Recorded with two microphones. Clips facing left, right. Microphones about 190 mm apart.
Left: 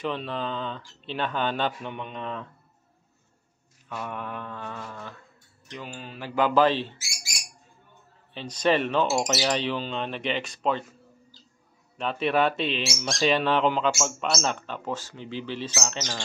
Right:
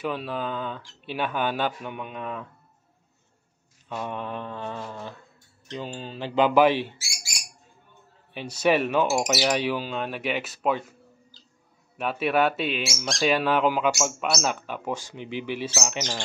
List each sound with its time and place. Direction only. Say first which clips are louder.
0.0 s speech: right 1 dB; 5° right (ahead or behind)
3.9 s speech: right 3 dB; 20° right (ahead or behind)
8.3 s speech: right 1 dB; 10° right (ahead or behind)
12.0 s speech: right 1 dB; 5° right (ahead or behind)